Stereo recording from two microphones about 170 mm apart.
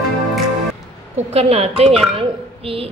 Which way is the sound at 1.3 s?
35° right (ahead or behind).